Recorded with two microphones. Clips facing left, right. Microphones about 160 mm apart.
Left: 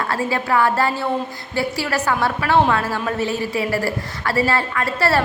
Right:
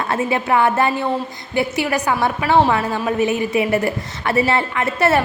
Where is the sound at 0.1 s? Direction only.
20° right (ahead or behind).